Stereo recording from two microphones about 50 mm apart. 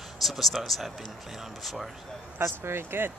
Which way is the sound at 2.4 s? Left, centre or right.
Right.